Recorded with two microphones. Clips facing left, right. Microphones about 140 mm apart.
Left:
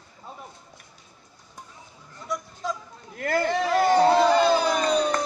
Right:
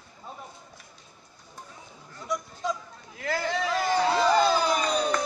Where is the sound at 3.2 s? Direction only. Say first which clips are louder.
Left 5 dB; 55° left (ahead or behind).